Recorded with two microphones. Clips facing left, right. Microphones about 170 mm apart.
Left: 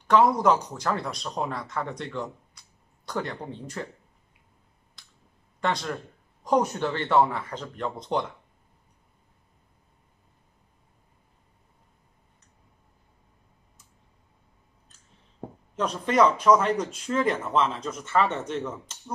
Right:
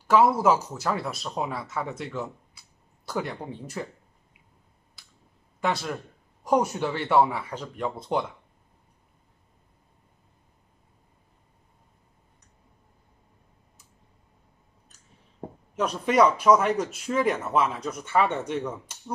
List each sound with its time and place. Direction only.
0.1 s speech: 5° right (ahead or behind)
5.0 s clicking: 5° right (ahead or behind)
5.6 s speech: 5° right (ahead or behind)
15.7 s speech: 10° right (ahead or behind)